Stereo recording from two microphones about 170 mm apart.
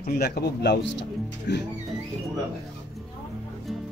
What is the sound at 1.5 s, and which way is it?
Music, 90° left.